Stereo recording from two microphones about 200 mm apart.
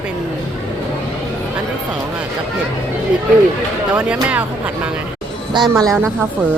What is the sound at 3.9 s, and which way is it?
Speech, 5° right (ahead or behind).